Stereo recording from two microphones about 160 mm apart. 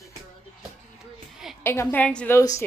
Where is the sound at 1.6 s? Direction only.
15° left (ahead or behind).